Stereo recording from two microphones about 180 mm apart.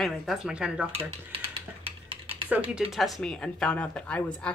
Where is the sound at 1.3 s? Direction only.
30° right (ahead or behind).